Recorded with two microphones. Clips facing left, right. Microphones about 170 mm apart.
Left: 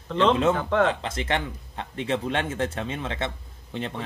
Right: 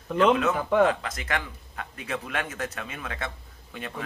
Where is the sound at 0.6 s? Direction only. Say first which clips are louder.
Right 1 dB; 10° right (ahead or behind).